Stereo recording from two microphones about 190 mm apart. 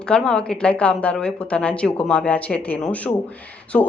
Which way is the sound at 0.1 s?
5° left (ahead or behind).